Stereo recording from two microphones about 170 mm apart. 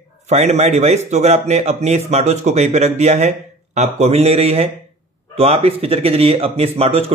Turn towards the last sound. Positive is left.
turn(degrees=-35)  # may be behind; listen again after turning